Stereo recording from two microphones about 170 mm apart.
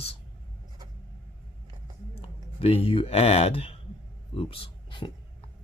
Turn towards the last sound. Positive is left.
turn(degrees=30)  # may be behind; listen again after turning